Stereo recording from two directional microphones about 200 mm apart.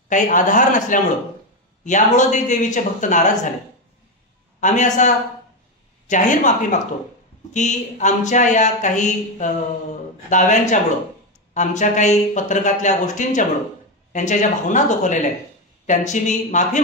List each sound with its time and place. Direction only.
0.1 s speech: 40° left (ahead or behind)
4.6 s speech: 35° left (ahead or behind)